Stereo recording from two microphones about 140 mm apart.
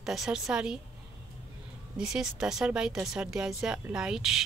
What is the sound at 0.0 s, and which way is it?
Speech, centre (ahead or behind).